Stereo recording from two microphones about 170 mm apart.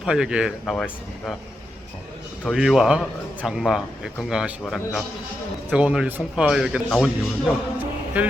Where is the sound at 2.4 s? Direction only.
Centre (ahead or behind).